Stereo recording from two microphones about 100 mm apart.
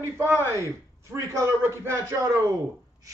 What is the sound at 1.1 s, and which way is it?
Speech, 30° right (ahead or behind).